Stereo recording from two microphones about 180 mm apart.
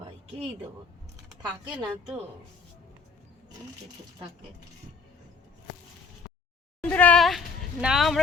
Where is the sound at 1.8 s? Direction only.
10° right (ahead or behind).